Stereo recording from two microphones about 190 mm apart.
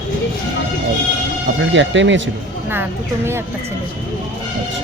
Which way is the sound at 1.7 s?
75° right (ahead or behind).